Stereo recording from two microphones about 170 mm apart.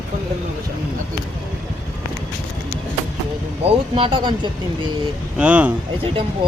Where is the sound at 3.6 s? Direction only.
30° right (ahead or behind).